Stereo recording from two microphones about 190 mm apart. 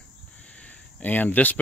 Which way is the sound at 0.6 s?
10° left (ahead or behind).